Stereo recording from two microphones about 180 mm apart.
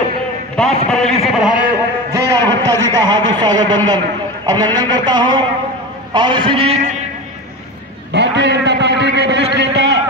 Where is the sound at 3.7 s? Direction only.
25° right (ahead or behind); by 7.0 s 40° right (ahead or behind).